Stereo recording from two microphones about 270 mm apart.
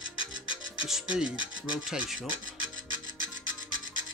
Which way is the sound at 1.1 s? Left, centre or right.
Centre.